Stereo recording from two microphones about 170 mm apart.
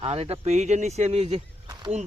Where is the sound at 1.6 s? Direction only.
25° right (ahead or behind).